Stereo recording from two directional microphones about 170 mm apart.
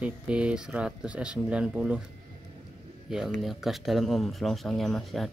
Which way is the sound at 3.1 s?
Centre (ahead or behind).